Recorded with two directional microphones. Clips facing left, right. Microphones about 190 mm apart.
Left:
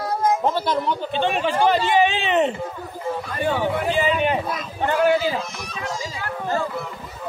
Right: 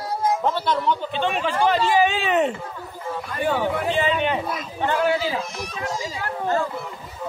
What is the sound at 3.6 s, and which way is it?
Speech, 10° left (ahead or behind).